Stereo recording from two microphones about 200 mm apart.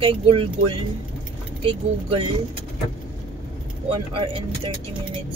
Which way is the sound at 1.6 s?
25° right (ahead or behind).